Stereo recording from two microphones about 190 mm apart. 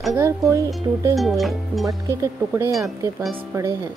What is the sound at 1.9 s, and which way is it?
Speech, 15° right (ahead or behind).